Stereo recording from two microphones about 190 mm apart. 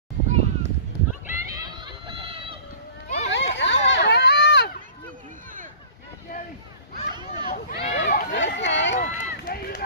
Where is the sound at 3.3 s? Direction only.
70° left (ahead or behind).